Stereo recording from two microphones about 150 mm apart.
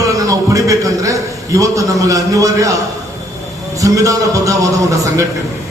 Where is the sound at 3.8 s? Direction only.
20° right (ahead or behind).